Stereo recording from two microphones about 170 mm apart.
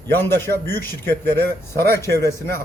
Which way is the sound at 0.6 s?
60° left (ahead or behind).